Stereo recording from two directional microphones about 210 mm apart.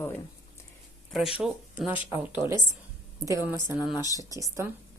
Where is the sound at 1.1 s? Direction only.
Centre (ahead or behind).